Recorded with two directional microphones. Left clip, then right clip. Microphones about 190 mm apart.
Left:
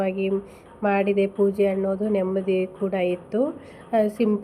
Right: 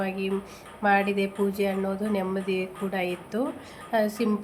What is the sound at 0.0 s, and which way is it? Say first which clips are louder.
A woman's voice: left 5 dB; 10° left (ahead or behind).